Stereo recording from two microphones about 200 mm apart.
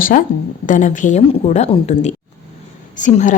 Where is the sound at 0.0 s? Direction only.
45° left (ahead or behind).